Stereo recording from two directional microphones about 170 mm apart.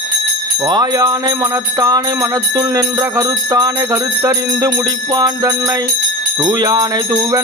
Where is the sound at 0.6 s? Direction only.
25° right (ahead or behind).